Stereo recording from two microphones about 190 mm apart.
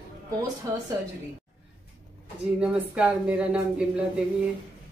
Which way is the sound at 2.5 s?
5° right (ahead or behind).